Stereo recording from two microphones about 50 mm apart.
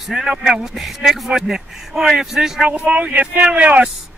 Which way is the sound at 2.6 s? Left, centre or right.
Right.